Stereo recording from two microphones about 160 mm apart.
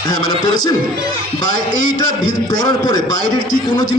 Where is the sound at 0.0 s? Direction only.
25° left (ahead or behind).